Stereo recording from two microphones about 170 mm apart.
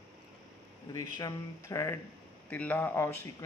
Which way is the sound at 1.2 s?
20° left (ahead or behind).